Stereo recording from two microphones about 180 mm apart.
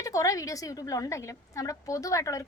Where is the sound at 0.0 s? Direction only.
20° left (ahead or behind).